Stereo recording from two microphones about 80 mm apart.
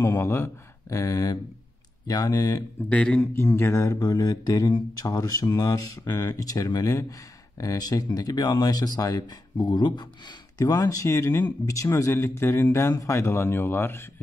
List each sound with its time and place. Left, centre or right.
0.0 s speech: left
2.9 s a man's voice: centre
3.2 s speech: left
4.0 s mantra: left
4.9 s speech: left
10.6 s speech: left